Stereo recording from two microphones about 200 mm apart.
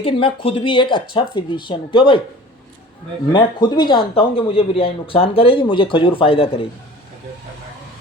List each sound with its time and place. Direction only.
0.0 s speech: 25° left (ahead or behind)
3.3 s speech: 20° left (ahead or behind)